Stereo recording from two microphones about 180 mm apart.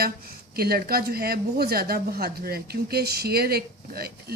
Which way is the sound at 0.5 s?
60° right (ahead or behind).